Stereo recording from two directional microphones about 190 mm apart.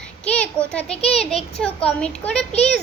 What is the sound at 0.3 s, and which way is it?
Child singing, 5° left (ahead or behind).